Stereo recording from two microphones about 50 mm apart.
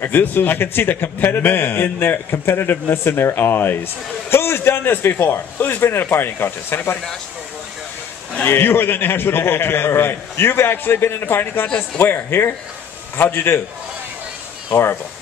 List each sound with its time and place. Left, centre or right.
0.0 s a man's voice: left
8.5 s a man's voice: left
14.7 s a man's voice: left